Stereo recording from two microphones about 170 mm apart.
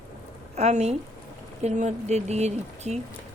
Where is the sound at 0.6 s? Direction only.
40° right (ahead or behind).